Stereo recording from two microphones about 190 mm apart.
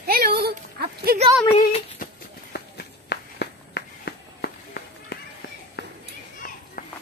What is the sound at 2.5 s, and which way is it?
Walk, 60° left (ahead or behind).